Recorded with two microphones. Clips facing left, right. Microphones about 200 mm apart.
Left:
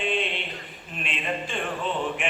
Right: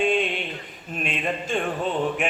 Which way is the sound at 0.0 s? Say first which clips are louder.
Right 5 dB; 45° right (ahead or behind).